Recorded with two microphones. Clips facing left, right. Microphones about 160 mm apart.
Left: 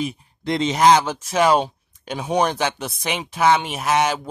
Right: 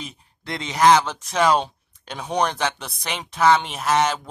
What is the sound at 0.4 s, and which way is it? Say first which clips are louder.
Speech: left 3 dB; 20° left (ahead or behind).